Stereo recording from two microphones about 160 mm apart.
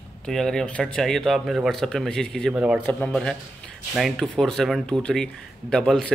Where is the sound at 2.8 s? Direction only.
10° left (ahead or behind).